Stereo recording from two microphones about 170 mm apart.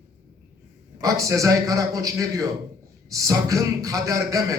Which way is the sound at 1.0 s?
20° right (ahead or behind).